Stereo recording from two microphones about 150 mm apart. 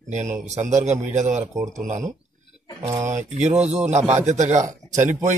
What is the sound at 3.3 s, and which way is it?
A man's voice, 50° right (ahead or behind).